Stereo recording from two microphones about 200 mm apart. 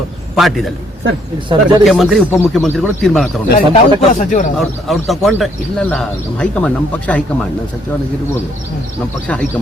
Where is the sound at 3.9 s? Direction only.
40° left (ahead or behind).